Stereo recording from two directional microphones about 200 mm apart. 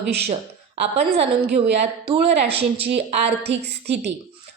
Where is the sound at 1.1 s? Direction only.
30° right (ahead or behind).